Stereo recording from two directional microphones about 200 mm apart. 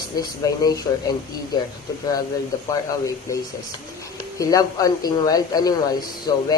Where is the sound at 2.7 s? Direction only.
15° left (ahead or behind).